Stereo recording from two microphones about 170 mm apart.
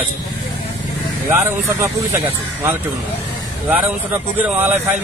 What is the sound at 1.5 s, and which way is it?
A man's voice, 15° right (ahead or behind).